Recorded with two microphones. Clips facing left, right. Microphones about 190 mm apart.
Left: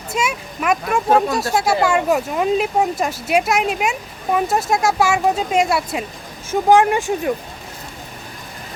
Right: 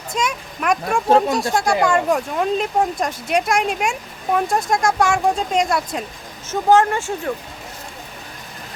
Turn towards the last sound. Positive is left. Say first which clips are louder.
# left 3 dB
turn(degrees=15)  # may be behind; listen again after turning